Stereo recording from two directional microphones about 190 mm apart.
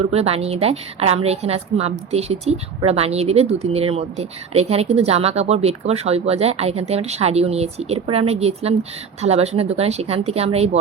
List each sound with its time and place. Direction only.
0.1 s a woman's voice: 35° right (ahead or behind)